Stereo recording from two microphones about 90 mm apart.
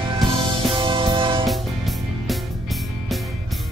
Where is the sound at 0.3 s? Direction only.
65° right (ahead or behind).